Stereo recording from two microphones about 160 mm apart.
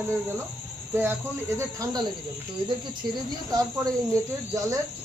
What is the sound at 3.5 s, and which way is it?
Speech, 25° right (ahead or behind).